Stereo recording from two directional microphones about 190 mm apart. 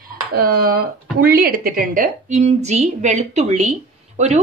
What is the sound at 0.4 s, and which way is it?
A woman's voice, 50° right (ahead or behind).